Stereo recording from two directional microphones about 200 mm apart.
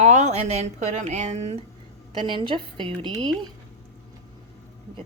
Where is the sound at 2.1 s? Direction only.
25° right (ahead or behind).